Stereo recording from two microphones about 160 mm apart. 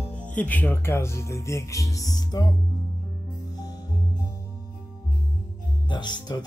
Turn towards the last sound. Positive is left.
turn(degrees=25)  # may be behind; listen again after turning